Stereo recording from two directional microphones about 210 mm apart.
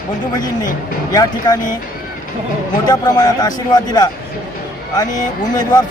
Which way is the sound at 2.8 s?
20° left (ahead or behind).